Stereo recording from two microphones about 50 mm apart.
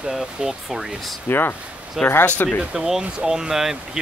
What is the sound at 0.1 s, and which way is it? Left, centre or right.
Speech, centre.